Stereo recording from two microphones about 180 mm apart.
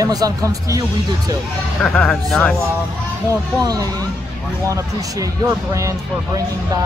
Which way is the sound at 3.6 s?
20° right (ahead or behind).